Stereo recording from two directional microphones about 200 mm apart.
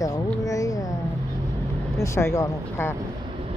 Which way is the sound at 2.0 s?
15° left (ahead or behind).